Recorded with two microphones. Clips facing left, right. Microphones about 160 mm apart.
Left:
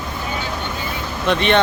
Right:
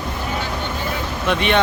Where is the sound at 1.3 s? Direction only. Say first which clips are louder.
Left 2 dB; 10° right (ahead or behind).